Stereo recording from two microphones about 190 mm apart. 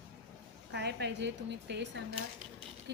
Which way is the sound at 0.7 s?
60° right (ahead or behind).